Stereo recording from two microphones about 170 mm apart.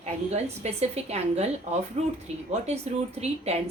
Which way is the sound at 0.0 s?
40° right (ahead or behind).